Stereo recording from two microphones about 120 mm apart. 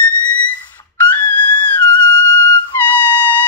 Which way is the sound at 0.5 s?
15° left (ahead or behind).